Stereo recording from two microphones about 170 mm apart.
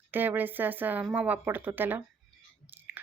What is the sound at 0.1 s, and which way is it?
A woman's voice, 10° right (ahead or behind).